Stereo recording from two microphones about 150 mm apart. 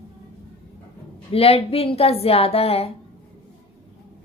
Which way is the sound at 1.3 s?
40° left (ahead or behind).